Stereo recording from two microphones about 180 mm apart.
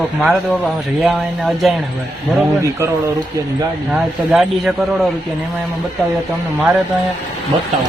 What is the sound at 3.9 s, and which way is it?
A man's voice, centre (ahead or behind).